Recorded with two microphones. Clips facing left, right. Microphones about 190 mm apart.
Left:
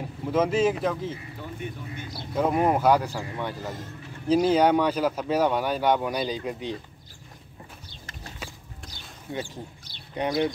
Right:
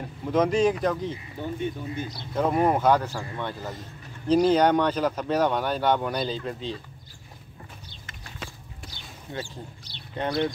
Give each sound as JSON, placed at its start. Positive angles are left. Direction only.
{"t": 0.0, "sound": "speech", "side_deg": 5}
{"t": 1.4, "sound": "speech", "side_deg": -25}
{"t": 2.1, "sound": "speech", "side_deg": 5}
{"t": 8.4, "sound": "a sound", "side_deg": 5}
{"t": 9.3, "sound": "speech", "side_deg": 15}